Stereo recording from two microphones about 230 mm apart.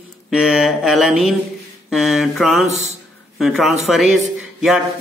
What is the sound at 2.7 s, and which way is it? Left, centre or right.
Speech, right.